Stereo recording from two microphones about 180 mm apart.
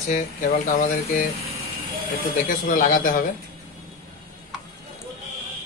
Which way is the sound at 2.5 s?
50° left (ahead or behind).